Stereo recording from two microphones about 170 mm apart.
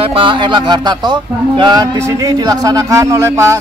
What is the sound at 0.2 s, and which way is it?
A man's voice, 30° right (ahead or behind).